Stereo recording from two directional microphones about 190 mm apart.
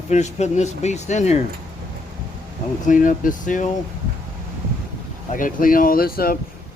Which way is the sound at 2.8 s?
45° left (ahead or behind).